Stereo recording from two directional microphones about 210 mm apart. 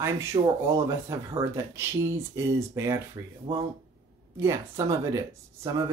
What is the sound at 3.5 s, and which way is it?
Speech, 30° right (ahead or behind).